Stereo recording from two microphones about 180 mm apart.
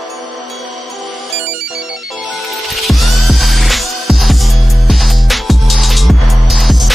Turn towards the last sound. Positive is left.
turn(degrees=0)  # may be behind; listen again after turning